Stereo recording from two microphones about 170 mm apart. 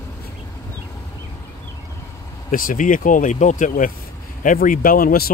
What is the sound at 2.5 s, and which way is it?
Speech, 55° left (ahead or behind).